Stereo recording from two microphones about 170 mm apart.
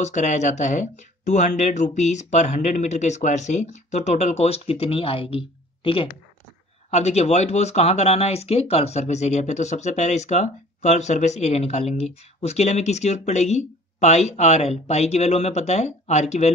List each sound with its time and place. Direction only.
0.0 s speech: 45° left (ahead or behind)